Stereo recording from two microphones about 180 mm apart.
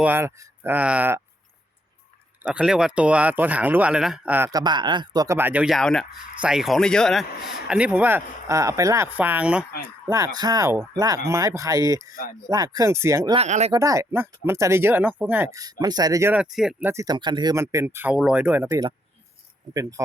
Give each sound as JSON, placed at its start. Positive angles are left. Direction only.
{"t": 0.0, "sound": "speech", "side_deg": -10}
{"t": 2.5, "sound": "speech", "side_deg": -5}
{"t": 4.6, "sound": "speech", "side_deg": -25}
{"t": 10.1, "sound": "speech", "side_deg": -20}
{"t": 13.3, "sound": "speech", "side_deg": -35}
{"t": 13.7, "sound": "speech", "side_deg": -20}
{"t": 16.9, "sound": "speech", "side_deg": -20}